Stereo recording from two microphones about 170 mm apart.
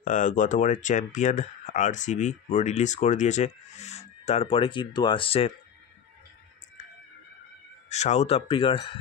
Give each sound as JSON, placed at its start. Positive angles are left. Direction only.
{"t": 0.0, "sound": "speech", "side_deg": 45}
{"t": 7.9, "sound": "speech", "side_deg": 40}